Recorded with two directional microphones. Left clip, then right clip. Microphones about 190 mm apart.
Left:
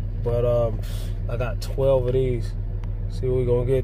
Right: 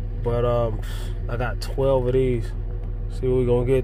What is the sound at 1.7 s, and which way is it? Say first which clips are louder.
Speech: even; centre (ahead or behind).